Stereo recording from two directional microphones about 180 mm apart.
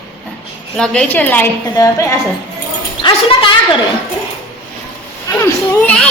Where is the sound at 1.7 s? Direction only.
20° left (ahead or behind).